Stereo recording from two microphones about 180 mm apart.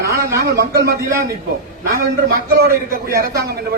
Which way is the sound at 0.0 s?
15° right (ahead or behind).